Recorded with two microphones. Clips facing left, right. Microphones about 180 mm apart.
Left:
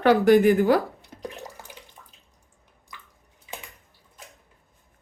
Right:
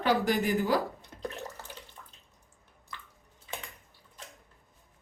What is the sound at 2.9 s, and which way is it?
Drip, 15° left (ahead or behind).